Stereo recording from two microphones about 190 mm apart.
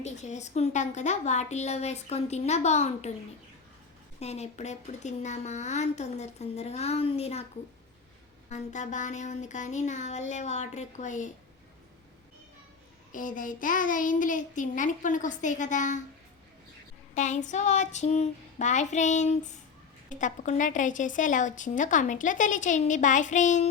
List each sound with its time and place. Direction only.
0.0 s a woman's voice: 35° left (ahead or behind)
4.2 s a woman's voice: 35° left (ahead or behind)
8.4 s a woman's voice: 40° left (ahead or behind)
13.1 s child singing: 45° left (ahead or behind)
17.2 s a woman's voice: 40° left (ahead or behind)